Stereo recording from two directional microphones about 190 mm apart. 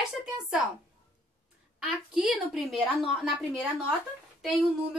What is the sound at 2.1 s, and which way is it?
A woman's voice, centre (ahead or behind).